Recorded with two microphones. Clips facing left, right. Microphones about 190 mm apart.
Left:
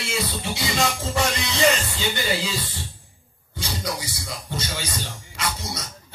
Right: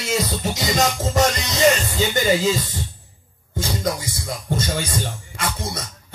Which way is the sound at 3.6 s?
45° right (ahead or behind).